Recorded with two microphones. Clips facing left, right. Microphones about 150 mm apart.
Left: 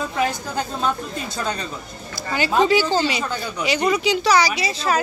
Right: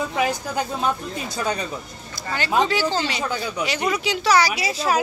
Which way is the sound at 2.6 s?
10° left (ahead or behind).